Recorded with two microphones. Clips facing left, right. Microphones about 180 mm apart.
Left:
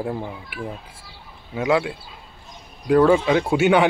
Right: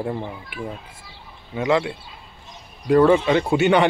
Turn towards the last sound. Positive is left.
turn(degrees=0)  # may be behind; listen again after turning